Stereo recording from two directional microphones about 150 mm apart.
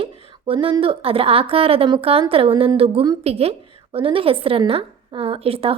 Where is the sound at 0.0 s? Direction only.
35° right (ahead or behind).